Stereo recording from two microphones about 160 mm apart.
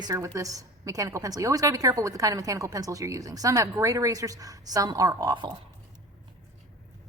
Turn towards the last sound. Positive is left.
turn(degrees=-25)  # may be behind; listen again after turning